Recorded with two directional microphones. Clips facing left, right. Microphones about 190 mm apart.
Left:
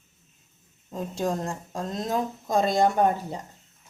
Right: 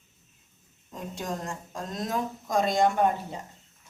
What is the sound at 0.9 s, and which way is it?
Speech, 30° left (ahead or behind).